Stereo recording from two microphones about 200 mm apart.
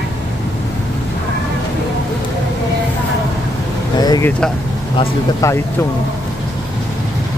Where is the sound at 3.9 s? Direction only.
20° left (ahead or behind).